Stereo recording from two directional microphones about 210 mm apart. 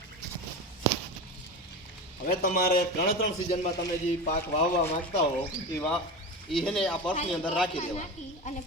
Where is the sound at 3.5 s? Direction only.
35° left (ahead or behind).